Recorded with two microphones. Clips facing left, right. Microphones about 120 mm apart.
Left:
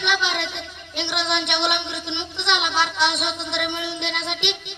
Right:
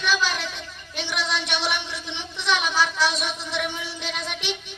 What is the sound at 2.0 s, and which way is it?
Speech, 20° left (ahead or behind).